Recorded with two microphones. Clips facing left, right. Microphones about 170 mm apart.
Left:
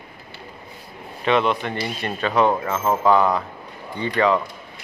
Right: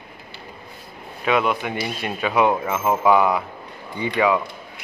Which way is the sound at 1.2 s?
5° right (ahead or behind).